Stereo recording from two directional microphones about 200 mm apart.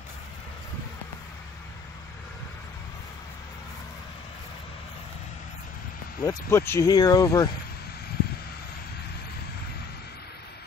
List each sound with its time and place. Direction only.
6.2 s speech: 10° left (ahead or behind)